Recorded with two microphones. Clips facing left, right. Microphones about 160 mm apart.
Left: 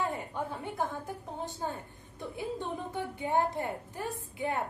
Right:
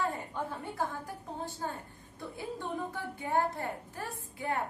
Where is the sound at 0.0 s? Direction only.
15° left (ahead or behind).